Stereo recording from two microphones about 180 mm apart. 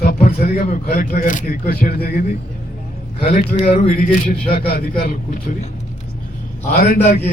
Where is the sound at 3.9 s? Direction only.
50° left (ahead or behind).